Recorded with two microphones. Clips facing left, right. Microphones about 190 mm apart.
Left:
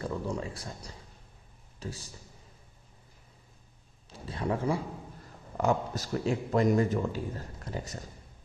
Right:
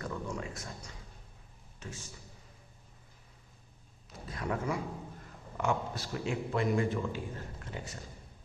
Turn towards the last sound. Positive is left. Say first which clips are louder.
# left 4 dB
turn(degrees=40)  # may be behind; listen again after turning